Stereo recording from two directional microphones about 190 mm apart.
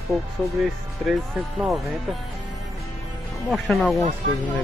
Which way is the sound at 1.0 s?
Centre (ahead or behind).